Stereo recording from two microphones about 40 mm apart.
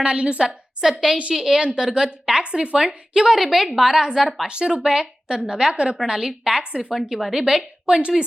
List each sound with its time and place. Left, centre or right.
0.0 s a woman's voice: right
0.4 s a woman's voice: centre
3.3 s a woman's voice: centre
4.4 s a woman's voice: right
6.1 s speech: centre
6.9 s speech: centre